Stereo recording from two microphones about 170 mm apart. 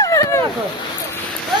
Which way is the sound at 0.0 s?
20° left (ahead or behind).